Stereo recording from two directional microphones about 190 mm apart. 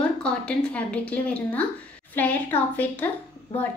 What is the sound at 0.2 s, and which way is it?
A woman's voice, 5° left (ahead or behind).